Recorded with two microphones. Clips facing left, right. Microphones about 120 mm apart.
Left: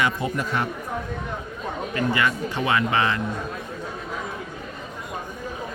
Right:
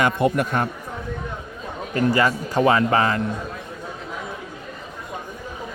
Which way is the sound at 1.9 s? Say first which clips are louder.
Right 5 dB; 40° right (ahead or behind).